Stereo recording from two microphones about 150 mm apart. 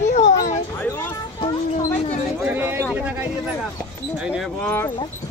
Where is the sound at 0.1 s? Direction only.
50° left (ahead or behind).